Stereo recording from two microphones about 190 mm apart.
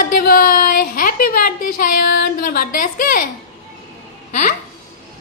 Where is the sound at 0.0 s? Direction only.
50° left (ahead or behind).